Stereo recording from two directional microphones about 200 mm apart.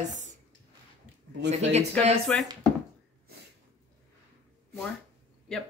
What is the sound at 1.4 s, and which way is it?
Speech, 35° right (ahead or behind).